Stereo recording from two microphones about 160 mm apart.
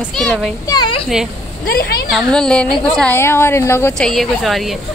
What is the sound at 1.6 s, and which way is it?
Speech, 70° left (ahead or behind).